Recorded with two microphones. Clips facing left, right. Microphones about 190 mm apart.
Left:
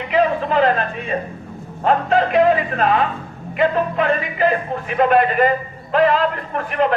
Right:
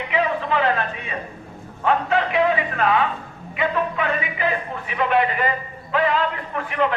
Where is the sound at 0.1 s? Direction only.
40° left (ahead or behind).